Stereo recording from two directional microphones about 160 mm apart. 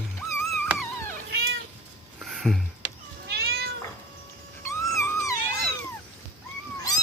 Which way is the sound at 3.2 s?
80° right.